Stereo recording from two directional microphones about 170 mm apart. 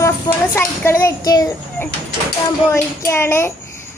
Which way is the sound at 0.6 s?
10° left (ahead or behind).